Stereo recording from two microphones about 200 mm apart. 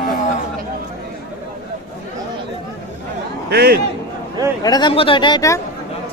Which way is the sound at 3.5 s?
50° right (ahead or behind).